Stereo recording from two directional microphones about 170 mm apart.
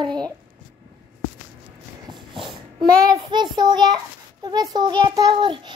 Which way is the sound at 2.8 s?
25° right (ahead or behind).